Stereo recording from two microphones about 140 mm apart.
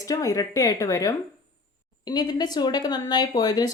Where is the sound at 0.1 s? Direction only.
25° left (ahead or behind).